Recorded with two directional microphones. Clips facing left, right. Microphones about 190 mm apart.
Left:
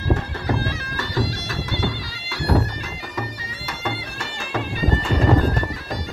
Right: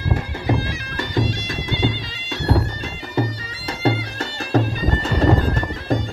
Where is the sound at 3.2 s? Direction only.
30° right (ahead or behind).